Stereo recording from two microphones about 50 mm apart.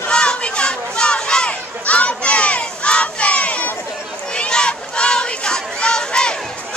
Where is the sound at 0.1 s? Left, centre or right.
Centre.